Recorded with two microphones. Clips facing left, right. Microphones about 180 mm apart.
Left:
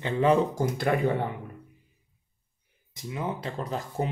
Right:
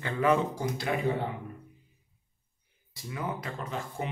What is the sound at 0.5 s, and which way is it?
Speech, 50° left (ahead or behind).